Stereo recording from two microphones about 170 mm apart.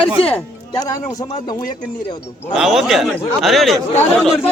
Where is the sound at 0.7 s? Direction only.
20° left (ahead or behind).